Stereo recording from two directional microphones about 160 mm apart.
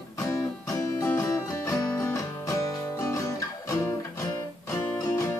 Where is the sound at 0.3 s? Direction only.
15° left (ahead or behind).